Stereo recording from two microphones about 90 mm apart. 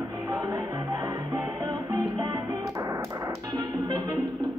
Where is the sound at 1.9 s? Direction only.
40° right (ahead or behind).